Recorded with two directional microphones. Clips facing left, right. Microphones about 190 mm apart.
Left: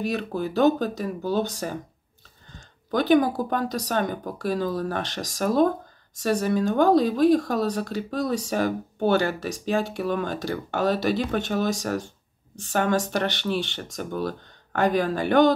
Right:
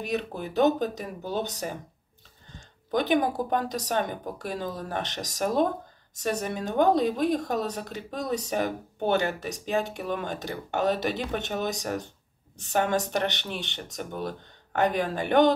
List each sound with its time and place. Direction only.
0.0 s speech: 20° right (ahead or behind)
2.9 s speech: 20° right (ahead or behind)